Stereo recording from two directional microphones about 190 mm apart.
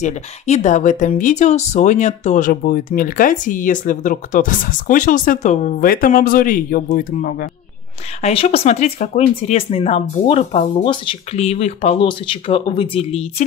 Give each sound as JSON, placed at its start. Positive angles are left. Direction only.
{"t": 0.0, "sound": "speech", "side_deg": 40}
{"t": 8.2, "sound": "speech", "side_deg": 35}